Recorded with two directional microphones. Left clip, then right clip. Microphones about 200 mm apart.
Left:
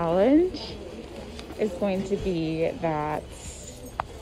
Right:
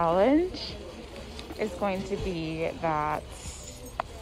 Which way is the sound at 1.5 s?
10° left (ahead or behind).